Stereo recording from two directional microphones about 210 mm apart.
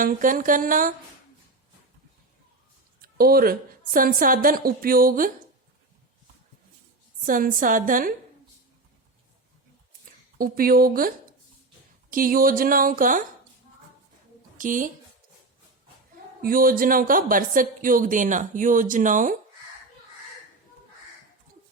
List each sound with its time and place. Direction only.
0.0 s a woman's voice: 40° right (ahead or behind)
3.0 s a woman's voice: 45° right (ahead or behind)
7.2 s a woman's voice: 40° right (ahead or behind)
10.1 s speech: 40° right (ahead or behind)
12.1 s a woman's voice: 40° right (ahead or behind)
14.6 s a woman's voice: 40° right (ahead or behind)
16.4 s a woman's voice: 45° right (ahead or behind)